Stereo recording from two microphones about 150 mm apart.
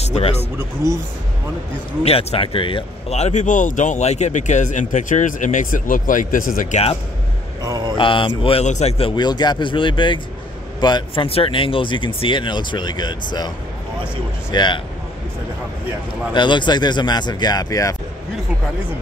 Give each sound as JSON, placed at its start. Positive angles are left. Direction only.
{"t": 0.0, "sound": "speech", "side_deg": 45}
{"t": 0.6, "sound": "speech", "side_deg": -20}
{"t": 2.0, "sound": "speech", "side_deg": 40}
{"t": 7.6, "sound": "speech", "side_deg": -25}
{"t": 8.0, "sound": "speech", "side_deg": 35}
{"t": 8.5, "sound": "speech", "side_deg": 45}
{"t": 14.5, "sound": "speech", "side_deg": 30}
{"t": 16.3, "sound": "speech", "side_deg": 30}